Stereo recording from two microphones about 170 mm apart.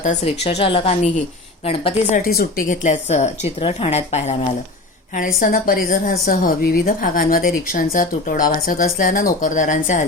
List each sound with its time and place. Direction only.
0.0 s a woman's voice: 40° left (ahead or behind)
2.1 s a woman's voice: 60° left (ahead or behind); by 4.4 s 40° left (ahead or behind)
5.1 s a woman's voice: 55° left (ahead or behind)